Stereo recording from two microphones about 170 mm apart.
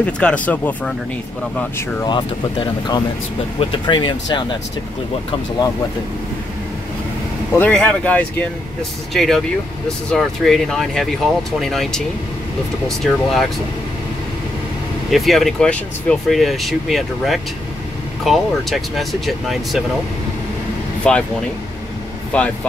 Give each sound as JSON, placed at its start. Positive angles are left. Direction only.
{"t": 0.0, "sound": "speech", "side_deg": 5}
{"t": 2.0, "sound": "speech", "side_deg": 25}
{"t": 7.5, "sound": "speech", "side_deg": 10}
{"t": 15.0, "sound": "speech", "side_deg": 0}
{"t": 21.0, "sound": "speech", "side_deg": 5}
{"t": 22.3, "sound": "speech", "side_deg": 10}